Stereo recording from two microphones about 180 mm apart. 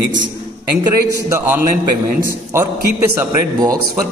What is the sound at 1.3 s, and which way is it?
A man's voice, 10° right (ahead or behind).